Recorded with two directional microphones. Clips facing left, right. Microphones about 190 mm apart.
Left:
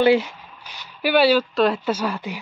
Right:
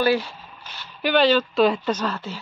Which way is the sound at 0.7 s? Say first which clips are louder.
Left 1 dB; 10° left (ahead or behind).